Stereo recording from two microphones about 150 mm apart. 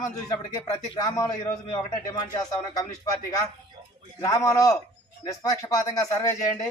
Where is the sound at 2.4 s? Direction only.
25° left (ahead or behind).